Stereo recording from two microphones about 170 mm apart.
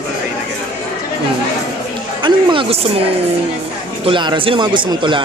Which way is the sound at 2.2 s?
30° right (ahead or behind).